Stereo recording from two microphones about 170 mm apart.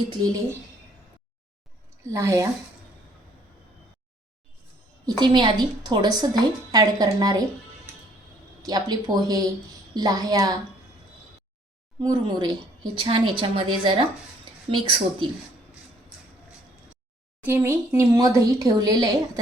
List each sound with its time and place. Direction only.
2.0 s speech: 15° right (ahead or behind)
5.0 s a woman's voice: 25° right (ahead or behind)
8.6 s a woman's voice: 25° right (ahead or behind)
12.0 s a woman's voice: 25° right (ahead or behind)
17.4 s a woman's voice: 15° right (ahead or behind)